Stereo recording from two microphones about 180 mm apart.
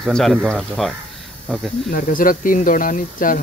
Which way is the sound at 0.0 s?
5° left (ahead or behind).